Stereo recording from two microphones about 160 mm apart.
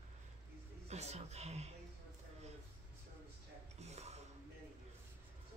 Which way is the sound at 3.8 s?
45° right (ahead or behind).